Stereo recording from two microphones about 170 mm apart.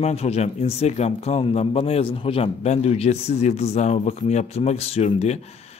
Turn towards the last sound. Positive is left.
turn(degrees=40)  # may be behind; listen again after turning